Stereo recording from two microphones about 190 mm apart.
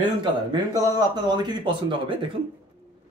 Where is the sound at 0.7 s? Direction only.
20° right (ahead or behind).